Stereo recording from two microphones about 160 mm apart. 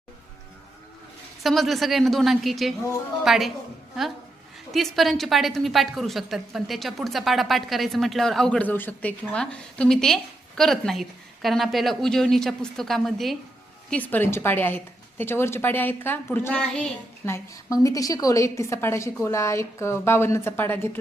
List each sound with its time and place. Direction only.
1.4 s a woman's voice: centre (ahead or behind)
4.7 s a woman's voice: centre (ahead or behind)
17.2 s a woman's voice: 20° left (ahead or behind)